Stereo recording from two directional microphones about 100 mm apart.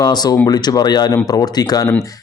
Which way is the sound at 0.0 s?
40° left (ahead or behind).